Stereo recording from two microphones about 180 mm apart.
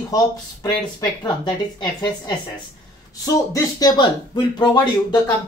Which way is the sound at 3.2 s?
20° left (ahead or behind).